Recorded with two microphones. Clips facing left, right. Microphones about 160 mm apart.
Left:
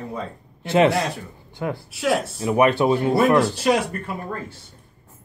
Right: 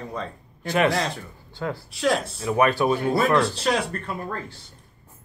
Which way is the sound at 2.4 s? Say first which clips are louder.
Left 3 dB; 20° left (ahead or behind).